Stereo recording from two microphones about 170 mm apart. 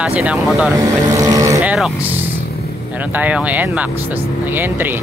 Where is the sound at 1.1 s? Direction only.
20° right (ahead or behind).